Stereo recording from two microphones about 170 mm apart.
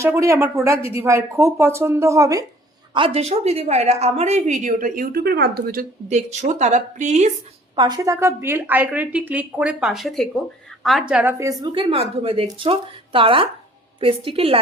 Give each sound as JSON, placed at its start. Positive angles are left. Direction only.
{"t": 0.0, "sound": "a woman's voice", "side_deg": -15}
{"t": 2.9, "sound": "a woman's voice", "side_deg": -35}
{"t": 6.1, "sound": "a woman's voice", "side_deg": -40}
{"t": 7.8, "sound": "a woman's voice", "side_deg": -25}
{"t": 11.3, "sound": "a woman's voice", "side_deg": -20}
{"t": 11.7, "sound": "a woman's voice", "side_deg": -30}